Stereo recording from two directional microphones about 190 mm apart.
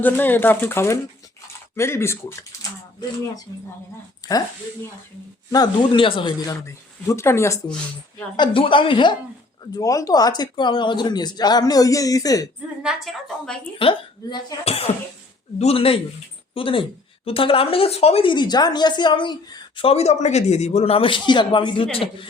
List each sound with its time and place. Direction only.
0.0 s speech: 10° left (ahead or behind)
4.3 s a woman's voice: 20° left (ahead or behind)
5.5 s a woman's voice: 20° left (ahead or behind)
8.4 s a woman's voice: 25° left (ahead or behind)
12.8 s a woman's voice: centre (ahead or behind)
13.7 s a woman's voice: 30° left (ahead or behind)